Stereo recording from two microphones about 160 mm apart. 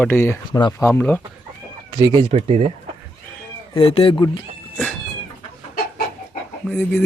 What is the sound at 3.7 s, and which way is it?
Speech, 35° left (ahead or behind).